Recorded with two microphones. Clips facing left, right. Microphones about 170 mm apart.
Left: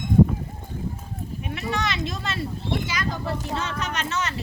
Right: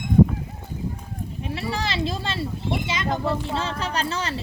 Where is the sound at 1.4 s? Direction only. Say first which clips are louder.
Even; 30° right (ahead or behind).